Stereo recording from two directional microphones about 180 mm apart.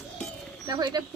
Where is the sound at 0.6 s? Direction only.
25° right (ahead or behind).